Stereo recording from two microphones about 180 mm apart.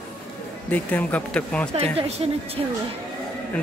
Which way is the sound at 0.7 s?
10° left (ahead or behind).